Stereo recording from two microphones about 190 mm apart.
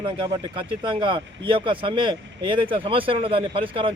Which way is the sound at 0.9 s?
25° right (ahead or behind).